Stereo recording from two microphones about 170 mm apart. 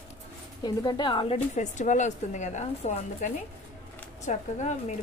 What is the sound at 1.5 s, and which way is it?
Speech, 45° left (ahead or behind).